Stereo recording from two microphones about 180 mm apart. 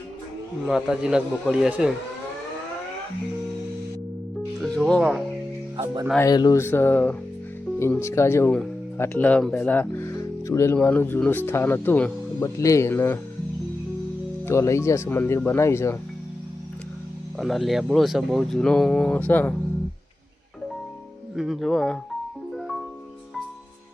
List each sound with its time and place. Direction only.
0.7 s speech: 5° right (ahead or behind)
4.6 s speech: centre (ahead or behind)
5.7 s speech: 30° right (ahead or behind)
6.1 s speech: 20° left (ahead or behind)
14.4 s speech: 15° left (ahead or behind)
17.3 s speech: centre (ahead or behind)
21.3 s speech: centre (ahead or behind)
22.5 s music: centre (ahead or behind)